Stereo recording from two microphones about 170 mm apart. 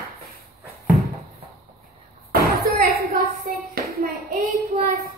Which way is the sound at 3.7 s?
60° right (ahead or behind).